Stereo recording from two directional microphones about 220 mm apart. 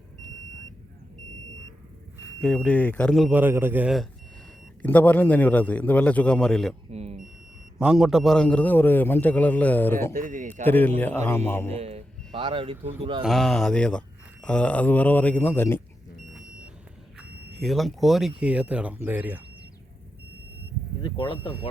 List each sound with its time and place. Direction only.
2.4 s speech: centre (ahead or behind)
4.8 s a man's voice: 5° left (ahead or behind)
6.9 s speech: 30° right (ahead or behind)
7.8 s a man's voice: 5° right (ahead or behind)
10.2 s speech: 35° right (ahead or behind)
10.5 s a man's voice: 10° left (ahead or behind)
11.7 s speech: 30° right (ahead or behind)
13.2 s a man's voice: centre (ahead or behind)
17.2 s speech: centre (ahead or behind)
21.0 s speech: 20° left (ahead or behind)